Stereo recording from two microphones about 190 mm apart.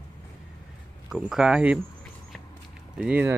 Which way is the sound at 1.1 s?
5° right (ahead or behind).